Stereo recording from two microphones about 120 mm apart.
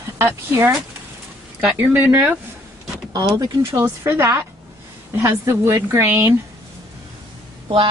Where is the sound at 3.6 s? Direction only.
20° right (ahead or behind).